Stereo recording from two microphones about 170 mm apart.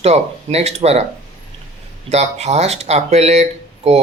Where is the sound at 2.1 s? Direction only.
40° right (ahead or behind).